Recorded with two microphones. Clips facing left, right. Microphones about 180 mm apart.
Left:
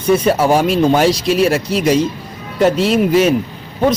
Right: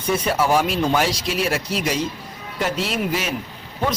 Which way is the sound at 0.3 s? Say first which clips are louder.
Left 6 dB; 30° left (ahead or behind).